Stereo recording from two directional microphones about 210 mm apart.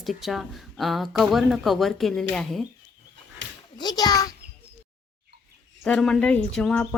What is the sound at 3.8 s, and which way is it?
Speech, 20° left (ahead or behind).